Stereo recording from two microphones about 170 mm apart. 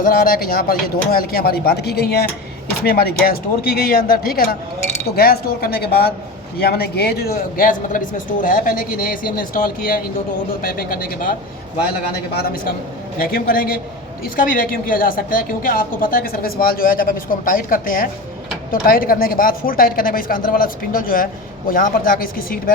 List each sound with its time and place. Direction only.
0.0 s a woman's voice: 55° left (ahead or behind)